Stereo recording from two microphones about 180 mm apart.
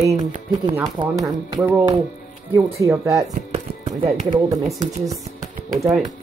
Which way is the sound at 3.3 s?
40° right (ahead or behind).